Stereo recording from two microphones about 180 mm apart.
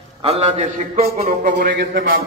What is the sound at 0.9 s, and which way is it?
Speech, 55° right (ahead or behind).